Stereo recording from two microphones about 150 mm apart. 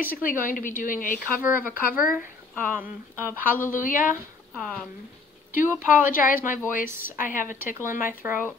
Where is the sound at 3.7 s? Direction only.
65° left (ahead or behind).